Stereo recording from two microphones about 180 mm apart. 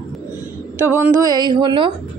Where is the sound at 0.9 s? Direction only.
10° right (ahead or behind).